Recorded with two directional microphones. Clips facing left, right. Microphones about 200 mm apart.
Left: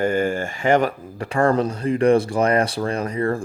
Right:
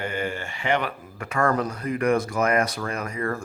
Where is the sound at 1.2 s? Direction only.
30° left (ahead or behind).